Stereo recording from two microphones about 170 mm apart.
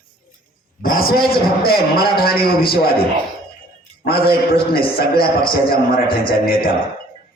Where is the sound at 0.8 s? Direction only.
60° left (ahead or behind).